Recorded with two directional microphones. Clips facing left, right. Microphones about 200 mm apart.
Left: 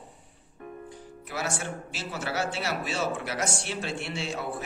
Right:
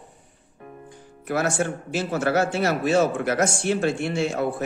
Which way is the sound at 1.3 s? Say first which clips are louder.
Right 9 dB; 55° right (ahead or behind).